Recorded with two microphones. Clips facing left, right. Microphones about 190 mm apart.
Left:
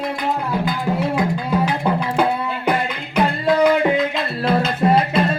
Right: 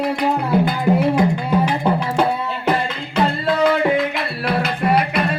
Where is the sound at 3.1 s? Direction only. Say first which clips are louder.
Left 1 dB; 15° left (ahead or behind).